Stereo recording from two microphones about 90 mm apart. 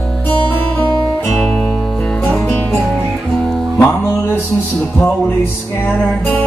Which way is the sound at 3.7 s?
25° left (ahead or behind).